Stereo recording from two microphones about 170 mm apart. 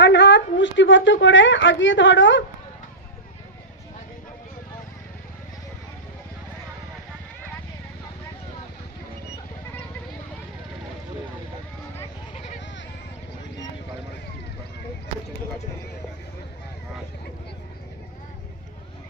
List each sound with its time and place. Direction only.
0.0 s a woman's voice: 90° left
12.3 s vehicle: 35° left (ahead or behind)